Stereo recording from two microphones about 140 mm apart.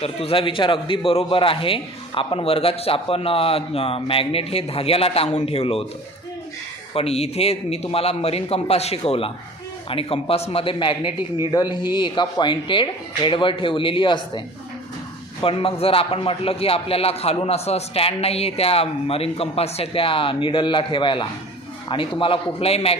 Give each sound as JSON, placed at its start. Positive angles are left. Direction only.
{"t": 0.0, "sound": "a man's voice", "side_deg": 45}
{"t": 6.9, "sound": "a man's voice", "side_deg": 45}